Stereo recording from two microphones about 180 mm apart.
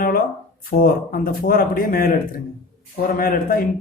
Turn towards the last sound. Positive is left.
turn(degrees=55)  # may be behind; listen again after turning